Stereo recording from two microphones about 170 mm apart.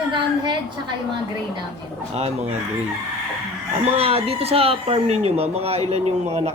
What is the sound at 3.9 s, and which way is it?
Speech, 35° right (ahead or behind).